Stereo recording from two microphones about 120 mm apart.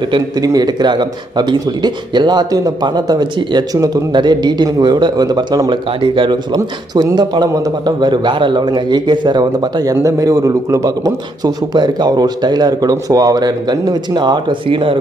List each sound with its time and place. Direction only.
0.4 s speech: 35° right (ahead or behind)
5.9 s speech: 45° right (ahead or behind)